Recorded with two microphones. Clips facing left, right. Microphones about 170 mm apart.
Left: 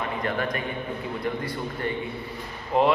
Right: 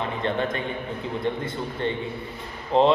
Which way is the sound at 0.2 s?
25° right (ahead or behind).